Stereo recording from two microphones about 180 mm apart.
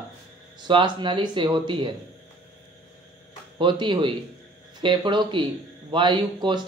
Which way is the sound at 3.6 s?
25° right (ahead or behind).